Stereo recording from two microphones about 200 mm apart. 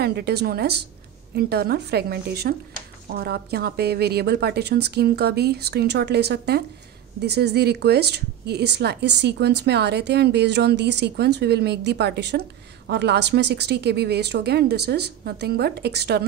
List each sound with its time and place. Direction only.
0.0 s a woman's voice: 55° right (ahead or behind)